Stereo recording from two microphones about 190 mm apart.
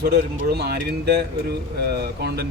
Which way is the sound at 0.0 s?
55° right (ahead or behind).